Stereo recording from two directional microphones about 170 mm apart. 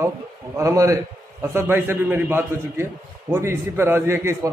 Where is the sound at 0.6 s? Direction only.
20° right (ahead or behind).